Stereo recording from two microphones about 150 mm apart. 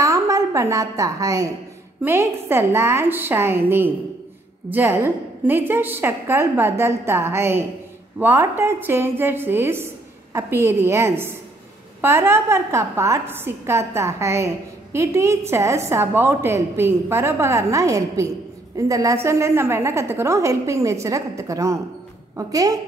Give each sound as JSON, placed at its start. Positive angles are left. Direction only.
{"t": 0.0, "sound": "a woman's voice", "side_deg": -20}